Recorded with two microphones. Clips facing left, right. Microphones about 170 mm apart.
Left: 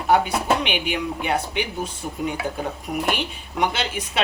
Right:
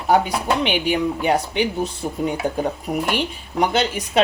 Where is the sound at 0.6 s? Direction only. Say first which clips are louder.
Right 5 dB; 35° right (ahead or behind).